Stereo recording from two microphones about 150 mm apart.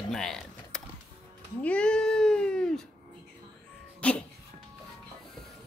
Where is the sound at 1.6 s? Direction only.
5° left (ahead or behind).